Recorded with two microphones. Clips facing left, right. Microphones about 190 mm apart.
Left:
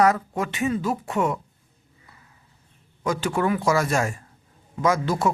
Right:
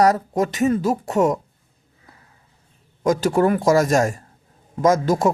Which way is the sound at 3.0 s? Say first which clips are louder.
Right 6 dB; 40° right (ahead or behind).